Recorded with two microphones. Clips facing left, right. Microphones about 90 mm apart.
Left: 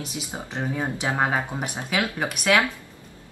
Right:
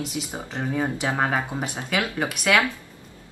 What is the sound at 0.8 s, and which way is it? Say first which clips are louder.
Speech: even; 10° left (ahead or behind).